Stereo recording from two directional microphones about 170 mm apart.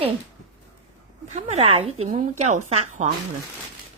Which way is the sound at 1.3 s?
40° right (ahead or behind).